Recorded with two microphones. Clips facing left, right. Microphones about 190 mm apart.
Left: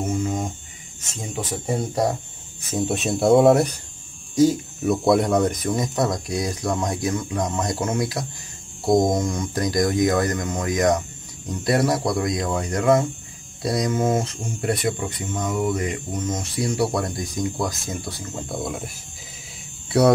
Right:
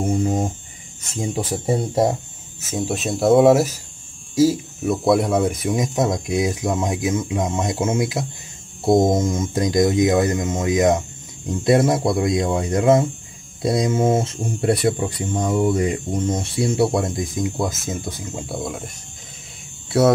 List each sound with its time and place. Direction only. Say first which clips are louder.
0.1 s music: right 5 dB; 35° right (ahead or behind)
1.3 s speech: right 3 dB; 30° right (ahead or behind)
2.6 s speech: even; centre (ahead or behind); by 18.4 s 15° right (ahead or behind)
18.5 s speech: even; centre (ahead or behind)
19.9 s speech: right 1 dB; centre (ahead or behind)